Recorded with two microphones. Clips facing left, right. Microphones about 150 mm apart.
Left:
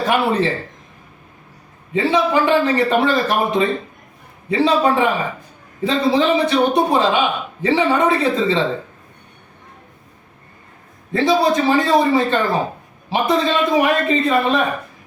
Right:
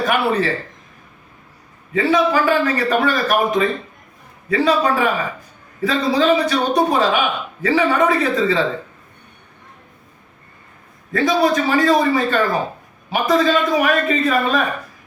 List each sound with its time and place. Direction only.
0.0 s a man's voice: 25° left (ahead or behind)
1.9 s a man's voice: 25° left (ahead or behind)
11.1 s a man's voice: 25° left (ahead or behind)